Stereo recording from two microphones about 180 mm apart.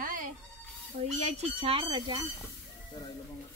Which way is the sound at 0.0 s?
50° right (ahead or behind).